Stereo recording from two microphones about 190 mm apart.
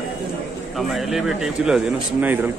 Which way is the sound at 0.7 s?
Centre (ahead or behind).